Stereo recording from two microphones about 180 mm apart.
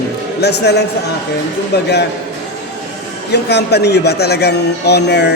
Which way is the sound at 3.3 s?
65° left (ahead or behind).